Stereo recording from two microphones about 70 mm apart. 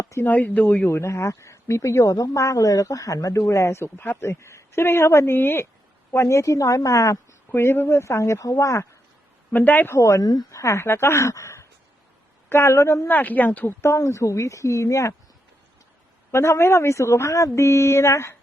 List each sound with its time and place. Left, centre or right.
0.2 s speech: left
0.9 s speech: left
3.4 s speech: left
6.1 s speech: left
7.5 s speech: left
9.5 s speech: left
9.9 s speech: left
13.1 s speech: left
13.7 s speech: left
16.3 s speech: left